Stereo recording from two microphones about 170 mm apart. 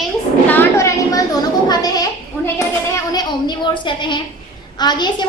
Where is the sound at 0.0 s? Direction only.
10° left (ahead or behind).